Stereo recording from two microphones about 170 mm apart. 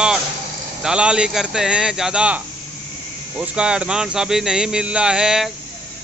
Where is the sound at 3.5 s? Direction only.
5° right (ahead or behind).